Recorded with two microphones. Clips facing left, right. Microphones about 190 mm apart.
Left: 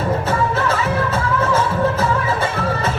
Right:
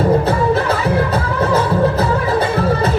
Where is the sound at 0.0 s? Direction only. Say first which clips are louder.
Right 5 dB; 35° right (ahead or behind).